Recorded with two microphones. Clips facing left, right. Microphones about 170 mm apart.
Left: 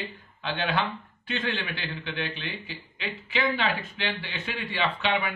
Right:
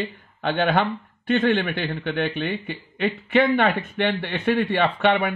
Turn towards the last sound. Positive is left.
turn(degrees=-55)  # may be behind; listen again after turning